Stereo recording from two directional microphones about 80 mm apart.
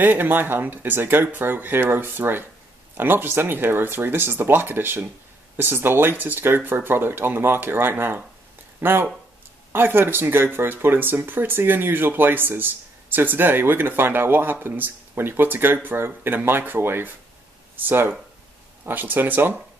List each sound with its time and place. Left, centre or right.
0.0 s speech: right